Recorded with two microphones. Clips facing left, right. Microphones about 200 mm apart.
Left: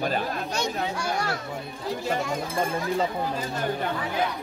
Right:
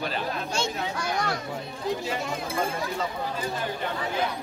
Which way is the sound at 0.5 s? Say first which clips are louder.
Left 2 dB; 15° left (ahead or behind).